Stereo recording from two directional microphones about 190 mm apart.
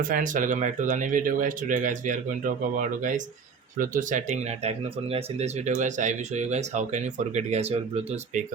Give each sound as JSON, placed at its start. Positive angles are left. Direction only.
{"t": 0.0, "sound": "speech", "side_deg": -45}